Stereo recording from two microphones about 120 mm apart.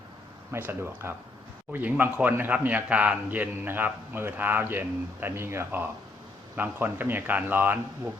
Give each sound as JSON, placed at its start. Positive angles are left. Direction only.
{"t": 0.5, "sound": "a man's voice", "side_deg": -20}